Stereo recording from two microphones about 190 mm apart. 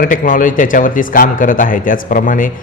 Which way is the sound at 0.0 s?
45° left (ahead or behind).